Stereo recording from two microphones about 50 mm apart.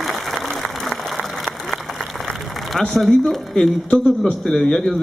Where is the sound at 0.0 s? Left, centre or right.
Centre.